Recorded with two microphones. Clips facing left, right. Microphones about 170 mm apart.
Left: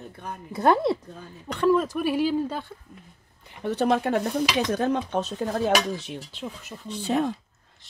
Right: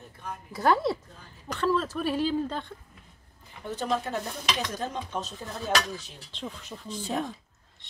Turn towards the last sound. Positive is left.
turn(degrees=75)  # may be behind; listen again after turning